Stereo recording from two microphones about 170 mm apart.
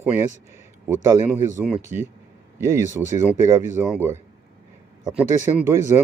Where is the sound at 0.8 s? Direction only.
15° right (ahead or behind).